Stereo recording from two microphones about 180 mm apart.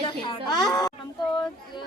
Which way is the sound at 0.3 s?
25° left (ahead or behind).